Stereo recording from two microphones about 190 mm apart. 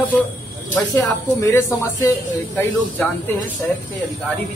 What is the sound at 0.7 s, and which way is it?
A woman's voice, 15° left (ahead or behind).